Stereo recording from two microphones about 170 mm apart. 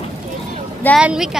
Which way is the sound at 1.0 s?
5° right (ahead or behind).